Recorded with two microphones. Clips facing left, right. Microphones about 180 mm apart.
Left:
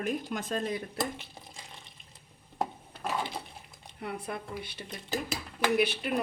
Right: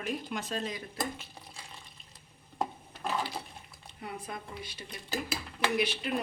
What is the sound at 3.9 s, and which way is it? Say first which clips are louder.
Speech: left 4 dB; 65° left (ahead or behind).